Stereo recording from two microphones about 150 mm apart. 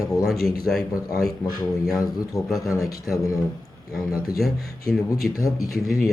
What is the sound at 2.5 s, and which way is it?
Speech, centre (ahead or behind).